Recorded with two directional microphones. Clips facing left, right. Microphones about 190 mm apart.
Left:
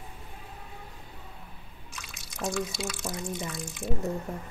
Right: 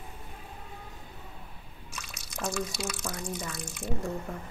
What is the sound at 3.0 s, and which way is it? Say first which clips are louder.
Speech: left 2 dB; 20° left (ahead or behind).